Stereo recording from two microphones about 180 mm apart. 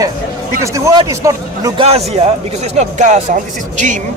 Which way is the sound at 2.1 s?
40° right (ahead or behind).